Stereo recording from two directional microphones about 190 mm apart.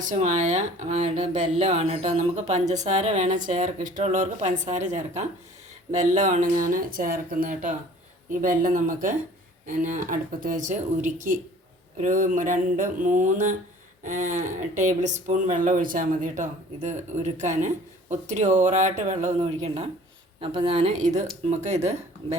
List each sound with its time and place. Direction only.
0.0 s speech: 40° right (ahead or behind)